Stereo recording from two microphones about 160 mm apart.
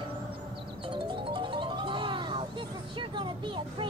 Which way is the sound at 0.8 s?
30° right (ahead or behind).